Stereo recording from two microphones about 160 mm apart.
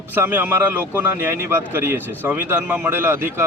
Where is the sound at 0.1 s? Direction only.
10° right (ahead or behind).